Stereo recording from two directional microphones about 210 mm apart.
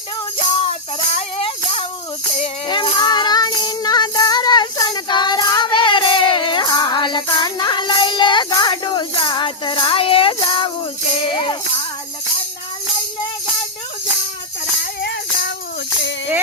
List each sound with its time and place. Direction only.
0.3 s music: 25° left (ahead or behind)
15.0 s music: 50° left (ahead or behind)
16.0 s a sound: 55° left (ahead or behind)